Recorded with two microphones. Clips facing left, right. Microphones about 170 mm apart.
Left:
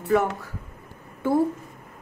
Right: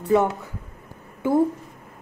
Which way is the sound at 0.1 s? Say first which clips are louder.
Right 2 dB; 20° right (ahead or behind).